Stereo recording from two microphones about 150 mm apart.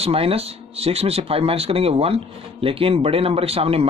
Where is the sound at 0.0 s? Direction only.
40° right (ahead or behind).